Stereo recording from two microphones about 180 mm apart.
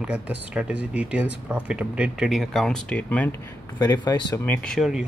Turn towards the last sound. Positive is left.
turn(degrees=0)  # may be behind; listen again after turning